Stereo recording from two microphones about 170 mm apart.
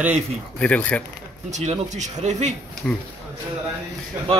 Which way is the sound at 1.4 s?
45° right (ahead or behind).